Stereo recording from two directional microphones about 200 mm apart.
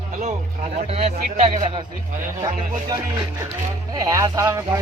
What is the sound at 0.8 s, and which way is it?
A man's voice, 30° right (ahead or behind).